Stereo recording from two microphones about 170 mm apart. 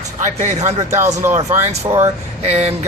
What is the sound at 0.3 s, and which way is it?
Speech, 45° right (ahead or behind).